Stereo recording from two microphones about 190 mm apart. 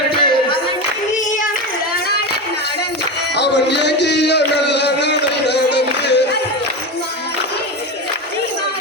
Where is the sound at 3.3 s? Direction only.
65° left (ahead or behind).